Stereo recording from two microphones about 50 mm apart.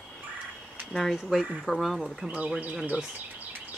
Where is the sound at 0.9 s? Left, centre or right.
Centre.